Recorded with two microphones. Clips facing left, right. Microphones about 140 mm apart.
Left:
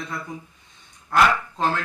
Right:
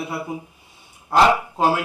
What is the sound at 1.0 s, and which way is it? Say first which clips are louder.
Speech: right 3 dB; 25° right (ahead or behind).